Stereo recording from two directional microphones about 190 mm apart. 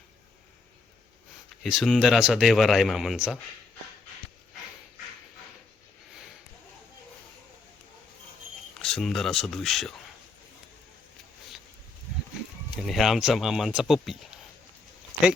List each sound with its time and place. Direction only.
1.6 s speech: centre (ahead or behind)
8.8 s speech: 5° left (ahead or behind)
12.8 s speech: centre (ahead or behind)